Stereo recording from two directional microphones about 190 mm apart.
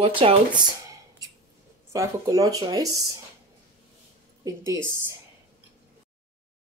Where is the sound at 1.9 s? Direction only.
15° right (ahead or behind).